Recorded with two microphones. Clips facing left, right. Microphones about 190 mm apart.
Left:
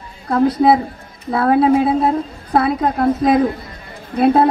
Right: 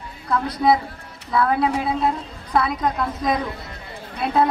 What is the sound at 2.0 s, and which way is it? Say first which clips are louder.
Speech: left 6 dB; 50° left (ahead or behind).